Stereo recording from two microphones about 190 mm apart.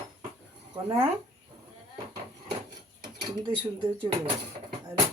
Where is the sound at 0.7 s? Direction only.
25° right (ahead or behind).